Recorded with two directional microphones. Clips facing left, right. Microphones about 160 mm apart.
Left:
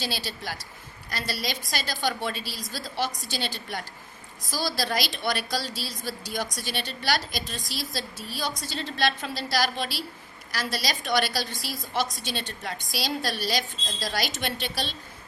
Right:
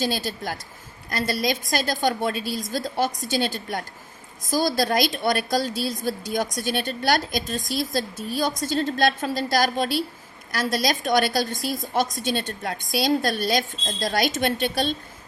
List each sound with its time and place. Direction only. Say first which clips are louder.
0.0 s a woman's voice: right 7 dB; 45° right (ahead or behind)